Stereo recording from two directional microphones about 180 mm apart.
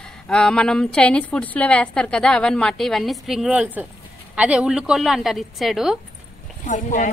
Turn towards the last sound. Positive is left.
turn(degrees=45)  # may be behind; listen again after turning